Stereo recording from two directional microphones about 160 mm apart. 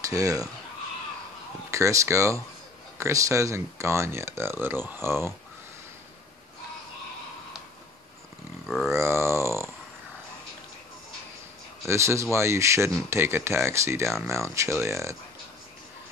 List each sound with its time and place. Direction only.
0.0 s speech: 20° right (ahead or behind)
1.7 s speech: 20° right (ahead or behind)
8.6 s grunt: centre (ahead or behind)
8.9 s grunt: 15° right (ahead or behind)
11.9 s speech: 15° right (ahead or behind)